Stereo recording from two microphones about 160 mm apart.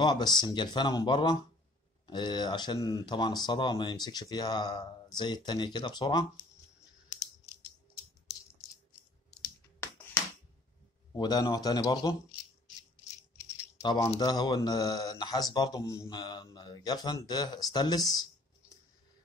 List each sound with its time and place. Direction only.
0.0 s speech: 25° left (ahead or behind)
9.3 s computer keyboard: 20° left (ahead or behind)
11.1 s speech: 25° left (ahead or behind)
13.5 s rattle: 20° left (ahead or behind)
14.2 s speech: 25° left (ahead or behind)